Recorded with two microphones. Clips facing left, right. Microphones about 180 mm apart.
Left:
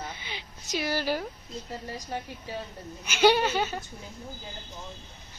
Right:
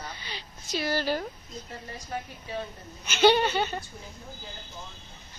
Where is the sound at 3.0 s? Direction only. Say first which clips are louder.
Right 1 dB; 10° left (ahead or behind).